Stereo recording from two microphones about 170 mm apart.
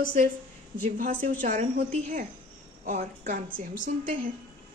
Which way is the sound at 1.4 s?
50° right (ahead or behind).